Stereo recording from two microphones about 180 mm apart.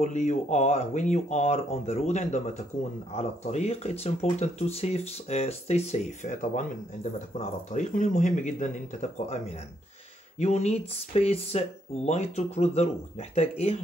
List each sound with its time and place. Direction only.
0.0 s speech: 40° left (ahead or behind)
10.4 s speech: 35° left (ahead or behind)